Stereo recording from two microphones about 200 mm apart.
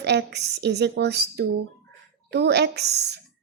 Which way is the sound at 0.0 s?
60° right (ahead or behind).